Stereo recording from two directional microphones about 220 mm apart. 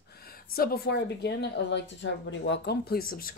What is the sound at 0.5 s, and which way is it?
A woman's voice, 45° left (ahead or behind).